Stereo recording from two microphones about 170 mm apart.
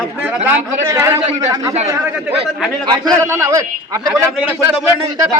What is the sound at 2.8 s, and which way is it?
A man's voice, 25° right (ahead or behind).